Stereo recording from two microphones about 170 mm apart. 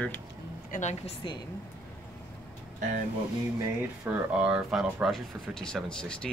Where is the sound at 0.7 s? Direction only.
45° left (ahead or behind).